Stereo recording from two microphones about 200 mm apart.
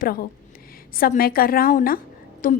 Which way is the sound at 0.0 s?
45° left (ahead or behind).